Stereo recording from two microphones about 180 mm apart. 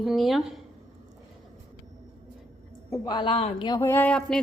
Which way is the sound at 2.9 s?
20° left (ahead or behind).